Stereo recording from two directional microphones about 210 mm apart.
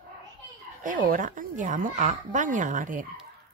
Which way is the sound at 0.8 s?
40° right (ahead or behind).